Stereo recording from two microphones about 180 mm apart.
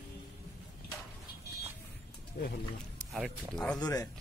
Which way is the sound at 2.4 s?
60° left (ahead or behind).